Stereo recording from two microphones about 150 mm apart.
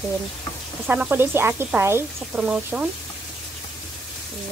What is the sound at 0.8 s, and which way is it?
Speech, 10° right (ahead or behind).